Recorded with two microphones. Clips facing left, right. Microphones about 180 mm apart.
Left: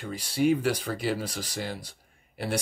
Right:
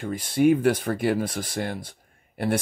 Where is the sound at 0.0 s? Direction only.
50° right (ahead or behind).